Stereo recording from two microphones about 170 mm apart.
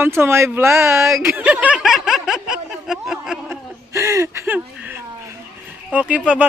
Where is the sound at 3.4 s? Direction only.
15° right (ahead or behind).